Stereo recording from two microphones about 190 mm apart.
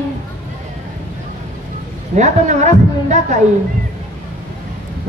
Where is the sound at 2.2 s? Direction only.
40° right (ahead or behind).